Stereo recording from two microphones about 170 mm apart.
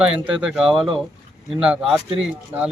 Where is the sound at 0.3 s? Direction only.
5° right (ahead or behind).